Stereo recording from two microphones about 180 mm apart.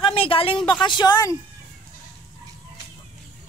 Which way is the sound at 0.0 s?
30° left (ahead or behind).